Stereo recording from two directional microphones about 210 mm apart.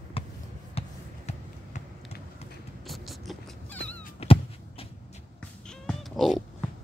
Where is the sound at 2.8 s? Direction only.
Centre (ahead or behind).